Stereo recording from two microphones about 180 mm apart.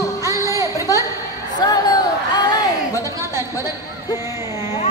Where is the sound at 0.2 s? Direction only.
15° right (ahead or behind).